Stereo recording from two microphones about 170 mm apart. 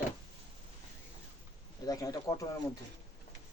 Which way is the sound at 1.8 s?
20° left (ahead or behind).